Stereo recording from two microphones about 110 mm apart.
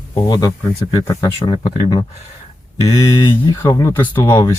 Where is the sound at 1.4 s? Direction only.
45° left (ahead or behind).